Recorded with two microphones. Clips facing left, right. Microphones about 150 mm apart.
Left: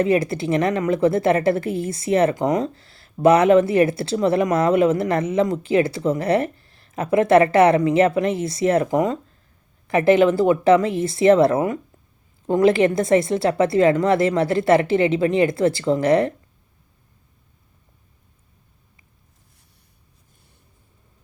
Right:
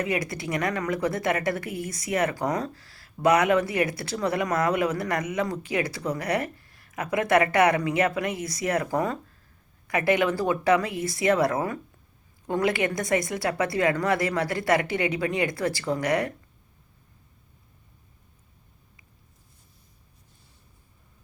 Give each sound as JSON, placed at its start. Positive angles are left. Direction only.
{"t": 0.0, "sound": "a woman's voice", "side_deg": 25}